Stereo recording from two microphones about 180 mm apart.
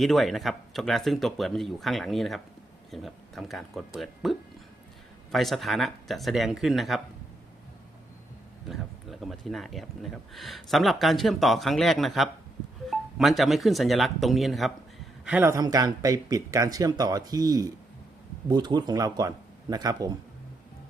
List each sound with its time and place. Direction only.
0.0 s speech: centre (ahead or behind)
8.6 s speech: centre (ahead or behind); by 20.1 s 20° right (ahead or behind)